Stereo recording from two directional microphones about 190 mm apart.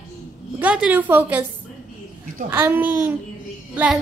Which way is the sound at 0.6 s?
5° right (ahead or behind).